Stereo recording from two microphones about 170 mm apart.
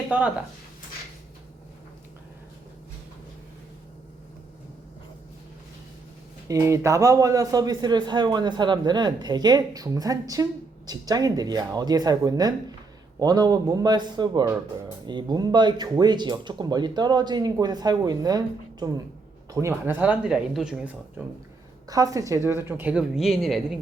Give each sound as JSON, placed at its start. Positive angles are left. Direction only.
{"t": 6.5, "sound": "a man's voice", "side_deg": -15}
{"t": 21.8, "sound": "a woman's voice", "side_deg": -20}